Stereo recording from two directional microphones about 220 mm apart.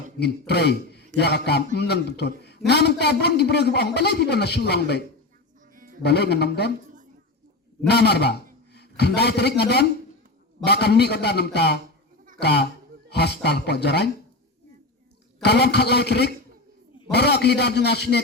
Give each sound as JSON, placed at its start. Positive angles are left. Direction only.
{"t": 0.2, "sound": "a man's voice", "side_deg": 50}
{"t": 7.9, "sound": "a man's voice", "side_deg": 50}
{"t": 15.4, "sound": "a man's voice", "side_deg": 50}